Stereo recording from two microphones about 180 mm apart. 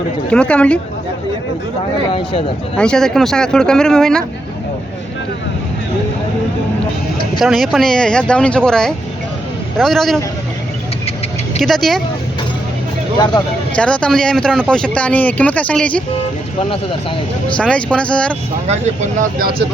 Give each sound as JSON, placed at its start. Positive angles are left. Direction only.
{"t": 0.3, "sound": "speech", "side_deg": 5}
{"t": 2.7, "sound": "speech", "side_deg": 5}
{"t": 7.3, "sound": "speech", "side_deg": 0}
{"t": 11.6, "sound": "speech", "side_deg": 0}
{"t": 13.1, "sound": "speech", "side_deg": 20}
{"t": 13.7, "sound": "speech", "side_deg": 5}
{"t": 17.6, "sound": "speech", "side_deg": 5}
{"t": 18.7, "sound": "speech", "side_deg": -40}